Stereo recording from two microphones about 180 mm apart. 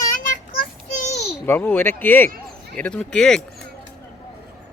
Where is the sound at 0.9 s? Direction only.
40° left (ahead or behind).